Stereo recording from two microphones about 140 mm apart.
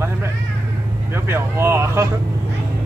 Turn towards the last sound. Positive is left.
turn(degrees=-15)  # may be behind; listen again after turning